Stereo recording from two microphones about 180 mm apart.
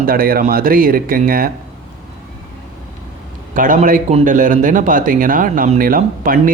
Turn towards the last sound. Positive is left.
turn(degrees=-50)  # may be behind; listen again after turning